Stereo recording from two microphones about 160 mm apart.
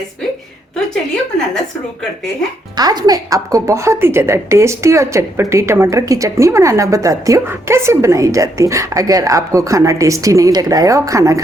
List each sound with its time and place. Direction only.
2.7 s a woman's voice: 25° right (ahead or behind)